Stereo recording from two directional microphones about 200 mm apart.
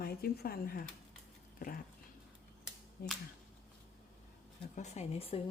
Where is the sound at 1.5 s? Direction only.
45° left (ahead or behind).